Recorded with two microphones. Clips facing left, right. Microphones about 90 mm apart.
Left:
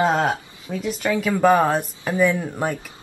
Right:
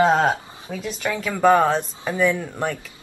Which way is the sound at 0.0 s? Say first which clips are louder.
Right 2 dB; 5° left (ahead or behind).